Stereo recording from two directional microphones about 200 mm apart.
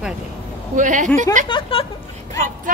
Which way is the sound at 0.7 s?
40° right (ahead or behind).